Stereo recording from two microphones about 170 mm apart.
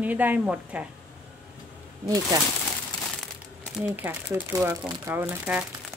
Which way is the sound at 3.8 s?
10° right (ahead or behind).